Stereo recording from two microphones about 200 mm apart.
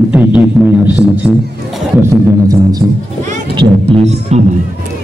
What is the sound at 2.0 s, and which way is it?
Speech, 15° right (ahead or behind).